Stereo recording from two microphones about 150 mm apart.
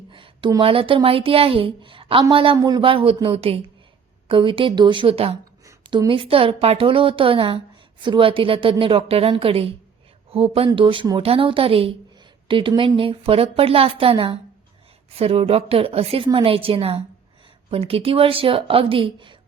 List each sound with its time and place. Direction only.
0.1 s a woman's voice: 35° right (ahead or behind)
5.6 s a sound: 20° right (ahead or behind)
6.1 s a woman's voice: 35° right (ahead or behind)